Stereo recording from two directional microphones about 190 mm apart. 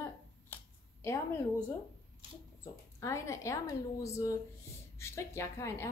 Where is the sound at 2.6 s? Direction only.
15° left (ahead or behind).